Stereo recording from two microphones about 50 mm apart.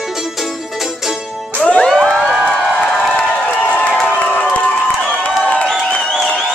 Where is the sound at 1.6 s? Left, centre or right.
Left.